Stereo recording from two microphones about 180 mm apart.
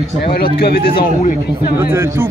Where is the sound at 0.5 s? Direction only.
60° left (ahead or behind).